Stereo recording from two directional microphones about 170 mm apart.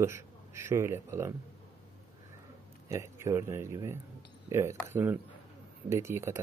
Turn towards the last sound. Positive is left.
turn(degrees=-15)  # may be behind; listen again after turning